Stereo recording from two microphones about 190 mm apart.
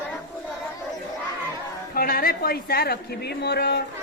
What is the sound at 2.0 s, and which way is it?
A woman's voice, 50° left (ahead or behind).